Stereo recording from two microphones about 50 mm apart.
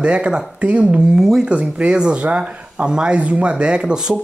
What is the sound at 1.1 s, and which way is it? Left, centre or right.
Speech, centre.